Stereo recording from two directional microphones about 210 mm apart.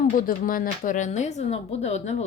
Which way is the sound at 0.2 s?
40° left (ahead or behind).